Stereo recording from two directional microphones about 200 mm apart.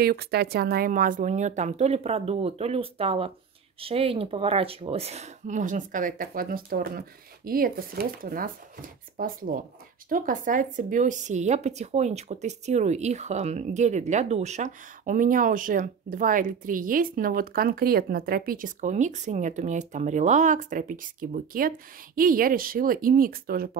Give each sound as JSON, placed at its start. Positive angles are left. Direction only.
{"t": 0.0, "sound": "a woman's voice", "side_deg": -50}